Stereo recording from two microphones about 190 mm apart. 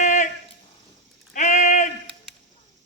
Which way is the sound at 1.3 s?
40° left (ahead or behind).